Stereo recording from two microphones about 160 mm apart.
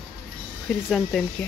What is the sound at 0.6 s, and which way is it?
Speech, centre (ahead or behind).